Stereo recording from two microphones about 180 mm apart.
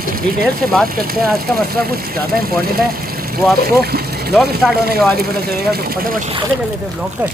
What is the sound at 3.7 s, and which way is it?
Speech, 60° right (ahead or behind).